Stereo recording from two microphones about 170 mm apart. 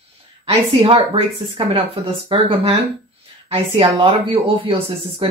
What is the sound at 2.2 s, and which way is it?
Speech, 35° right (ahead or behind).